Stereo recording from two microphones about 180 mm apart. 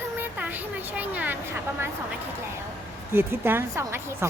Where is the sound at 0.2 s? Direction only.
10° right (ahead or behind).